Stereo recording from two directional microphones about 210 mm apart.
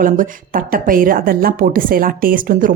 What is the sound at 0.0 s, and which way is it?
A woman's voice, 40° right (ahead or behind).